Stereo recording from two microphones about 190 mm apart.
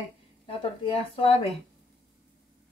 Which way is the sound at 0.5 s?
30° left (ahead or behind).